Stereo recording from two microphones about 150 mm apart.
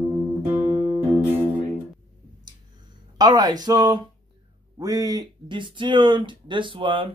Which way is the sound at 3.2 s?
25° right (ahead or behind).